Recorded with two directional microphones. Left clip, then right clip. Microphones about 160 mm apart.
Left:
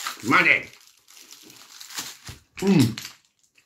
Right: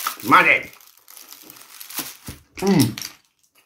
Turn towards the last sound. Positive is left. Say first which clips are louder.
# right 2 dB
turn(degrees=-15)  # may be behind; listen again after turning